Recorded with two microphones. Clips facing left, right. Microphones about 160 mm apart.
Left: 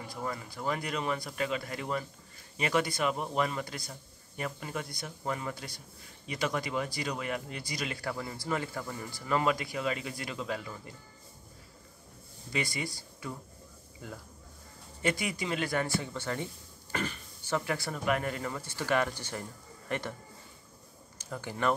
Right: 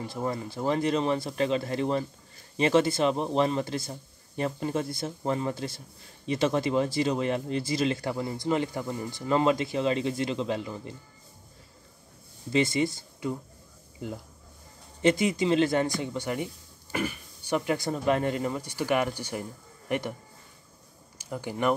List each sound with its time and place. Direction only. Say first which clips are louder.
0.0 s speech: right 6 dB; 25° right (ahead or behind)
12.5 s speech: right 10 dB; 25° right (ahead or behind)
21.2 s speech: right 4 dB; 15° right (ahead or behind)